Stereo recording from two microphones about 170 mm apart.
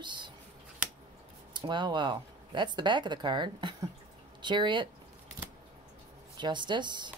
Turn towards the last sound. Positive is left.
turn(degrees=-25)  # may be behind; listen again after turning